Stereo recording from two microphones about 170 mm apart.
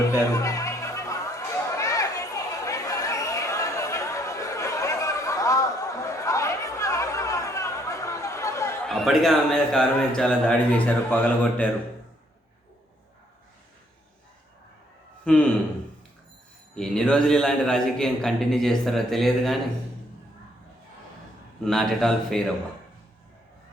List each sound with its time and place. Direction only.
0.0 s chatter: 20° left (ahead or behind)
8.8 s a man's voice: centre (ahead or behind)
15.2 s speech: 5° left (ahead or behind)
16.7 s a man's voice: 5° left (ahead or behind)
21.6 s a man's voice: centre (ahead or behind)